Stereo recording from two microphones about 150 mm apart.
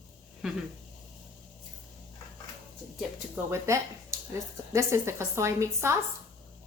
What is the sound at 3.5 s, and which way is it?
A woman's voice, 20° right (ahead or behind).